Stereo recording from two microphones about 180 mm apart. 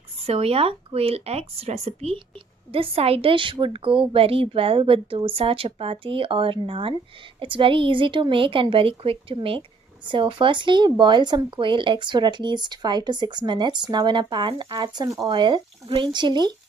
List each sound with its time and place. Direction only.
0.3 s a woman's voice: 35° right (ahead or behind)